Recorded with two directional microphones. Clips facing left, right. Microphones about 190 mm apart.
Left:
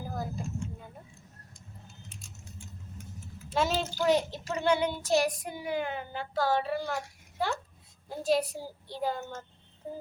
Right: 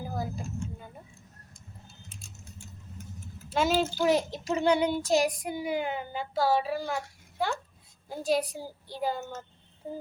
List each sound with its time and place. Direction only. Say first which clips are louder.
0.1 s vehicle: right 1 dB; 5° right (ahead or behind)
3.5 s a child's voice: right 3 dB; centre (ahead or behind)